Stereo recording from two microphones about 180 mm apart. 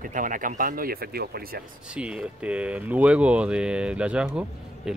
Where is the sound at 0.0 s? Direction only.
45° right (ahead or behind).